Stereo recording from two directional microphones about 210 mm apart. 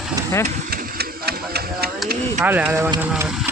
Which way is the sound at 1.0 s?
50° right (ahead or behind).